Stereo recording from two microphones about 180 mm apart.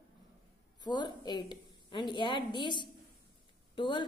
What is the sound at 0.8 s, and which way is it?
A woman's voice, 25° left (ahead or behind).